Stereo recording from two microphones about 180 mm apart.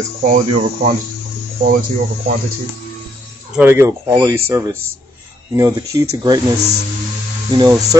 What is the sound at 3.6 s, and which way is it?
Speech, 15° right (ahead or behind).